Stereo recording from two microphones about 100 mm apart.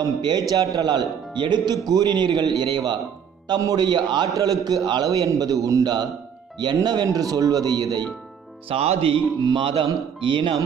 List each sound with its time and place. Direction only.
0.0 s speech: 45° right (ahead or behind)
8.6 s speech: 85° right
9.4 s music: 50° right (ahead or behind)